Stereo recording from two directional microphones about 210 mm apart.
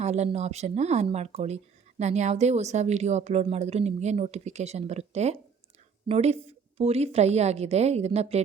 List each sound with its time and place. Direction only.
0.0 s speech: 30° right (ahead or behind)